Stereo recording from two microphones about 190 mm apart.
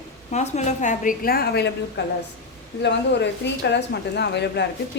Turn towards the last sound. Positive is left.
turn(degrees=65)  # may be behind; listen again after turning